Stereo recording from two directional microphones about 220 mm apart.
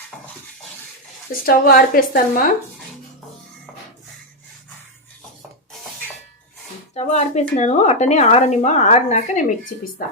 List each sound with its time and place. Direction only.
1.3 s a woman's voice: 40° left (ahead or behind)
6.9 s a woman's voice: 30° left (ahead or behind)